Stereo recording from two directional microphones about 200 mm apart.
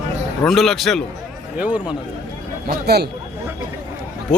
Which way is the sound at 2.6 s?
55° right (ahead or behind).